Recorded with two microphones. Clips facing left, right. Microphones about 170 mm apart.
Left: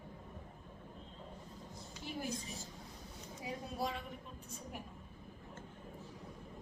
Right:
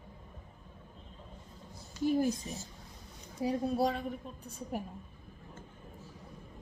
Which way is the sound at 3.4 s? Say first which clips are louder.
Right 11 dB; 35° right (ahead or behind).